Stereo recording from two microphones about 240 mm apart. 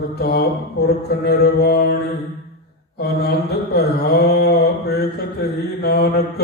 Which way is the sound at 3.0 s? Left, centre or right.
Left.